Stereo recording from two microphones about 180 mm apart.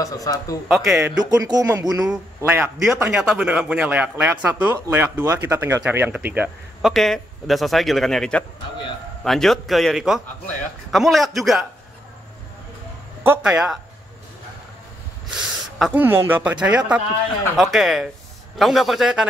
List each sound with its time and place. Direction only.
0.0 s speech: 20° left (ahead or behind)
0.7 s a man's voice: centre (ahead or behind)
1.0 s speech: 20° right (ahead or behind)
2.0 s a man's voice: 10° right (ahead or behind)
13.2 s a man's voice: 10° right (ahead or behind)
15.9 s a man's voice: 10° right (ahead or behind)